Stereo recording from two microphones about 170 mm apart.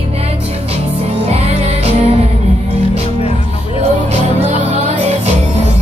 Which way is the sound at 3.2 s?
35° left (ahead or behind).